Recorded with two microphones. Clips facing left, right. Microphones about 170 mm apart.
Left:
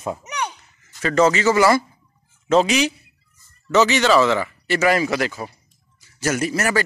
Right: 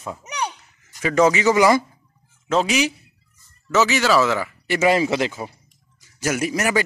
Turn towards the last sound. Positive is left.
turn(degrees=-15)  # may be behind; listen again after turning